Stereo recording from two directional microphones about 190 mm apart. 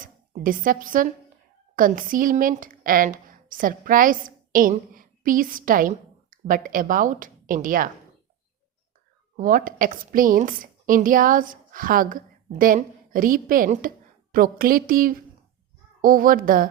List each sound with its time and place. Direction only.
0.0 s speech: 45° right (ahead or behind)
9.3 s a woman's voice: 45° right (ahead or behind)